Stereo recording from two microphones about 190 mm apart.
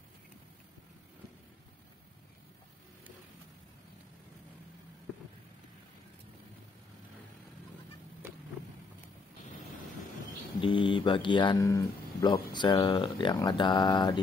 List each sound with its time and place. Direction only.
10.6 s speech: 25° left (ahead or behind)